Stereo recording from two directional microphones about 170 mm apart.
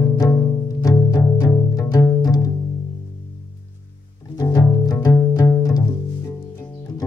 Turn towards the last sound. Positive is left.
turn(degrees=20)  # may be behind; listen again after turning